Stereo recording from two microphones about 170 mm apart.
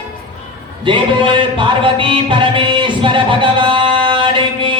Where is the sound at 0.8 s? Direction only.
30° right (ahead or behind).